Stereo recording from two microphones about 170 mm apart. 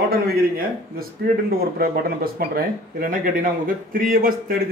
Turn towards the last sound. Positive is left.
turn(degrees=-55)  # may be behind; listen again after turning